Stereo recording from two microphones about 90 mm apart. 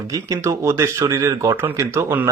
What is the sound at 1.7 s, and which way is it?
Speech, 25° right (ahead or behind).